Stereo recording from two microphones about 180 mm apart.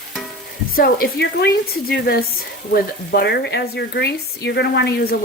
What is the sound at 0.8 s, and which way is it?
Speech, 60° left (ahead or behind).